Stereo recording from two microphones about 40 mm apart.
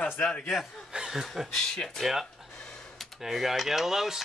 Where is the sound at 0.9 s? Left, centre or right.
Centre.